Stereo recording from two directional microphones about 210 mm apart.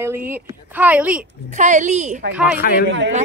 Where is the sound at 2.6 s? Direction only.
45° left (ahead or behind).